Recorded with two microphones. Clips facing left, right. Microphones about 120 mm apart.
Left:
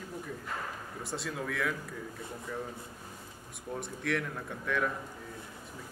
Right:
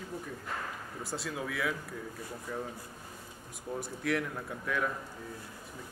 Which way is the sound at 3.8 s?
5° right (ahead or behind).